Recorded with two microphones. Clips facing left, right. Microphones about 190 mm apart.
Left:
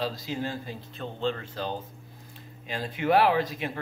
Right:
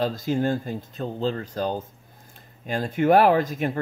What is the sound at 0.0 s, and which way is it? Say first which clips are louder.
Speech: right 8 dB; 50° right (ahead or behind).